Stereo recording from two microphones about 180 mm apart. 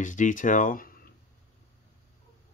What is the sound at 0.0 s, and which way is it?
Speech, 45° left (ahead or behind).